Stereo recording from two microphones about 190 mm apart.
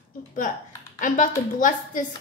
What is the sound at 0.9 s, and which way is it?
A woman's voice, 45° left (ahead or behind).